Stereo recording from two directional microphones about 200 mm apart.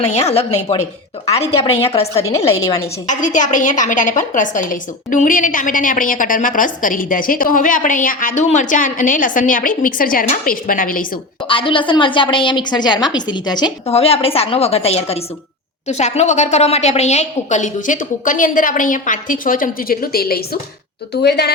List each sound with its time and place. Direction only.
0.0 s a woman's voice: 35° left (ahead or behind)
11.4 s a woman's voice: 25° left (ahead or behind); by 21.5 s 55° left (ahead or behind)